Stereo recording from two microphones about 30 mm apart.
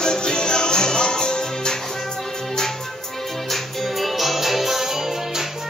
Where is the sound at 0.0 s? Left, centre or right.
Left.